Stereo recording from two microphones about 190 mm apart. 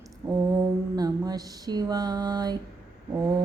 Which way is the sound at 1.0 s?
20° right (ahead or behind).